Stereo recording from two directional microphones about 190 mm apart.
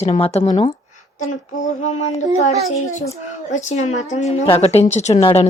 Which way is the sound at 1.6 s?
35° left (ahead or behind).